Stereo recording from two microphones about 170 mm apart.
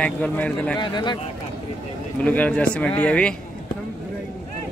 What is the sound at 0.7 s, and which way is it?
Speech, 25° left (ahead or behind).